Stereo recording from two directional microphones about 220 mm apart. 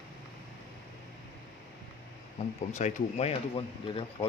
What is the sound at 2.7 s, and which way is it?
Speech, 30° left (ahead or behind).